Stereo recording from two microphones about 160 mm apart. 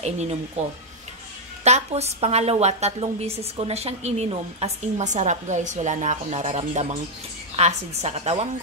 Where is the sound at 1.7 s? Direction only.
45° right (ahead or behind).